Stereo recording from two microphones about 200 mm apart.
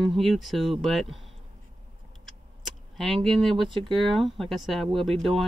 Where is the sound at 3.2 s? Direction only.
Centre (ahead or behind).